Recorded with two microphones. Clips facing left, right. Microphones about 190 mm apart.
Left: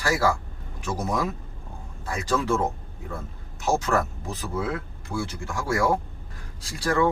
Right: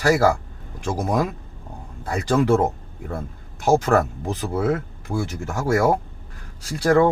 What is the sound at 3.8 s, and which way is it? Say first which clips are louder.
Speech: right 6 dB; 55° right (ahead or behind).